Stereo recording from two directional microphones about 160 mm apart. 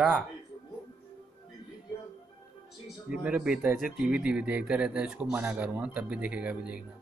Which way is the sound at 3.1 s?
5° right (ahead or behind).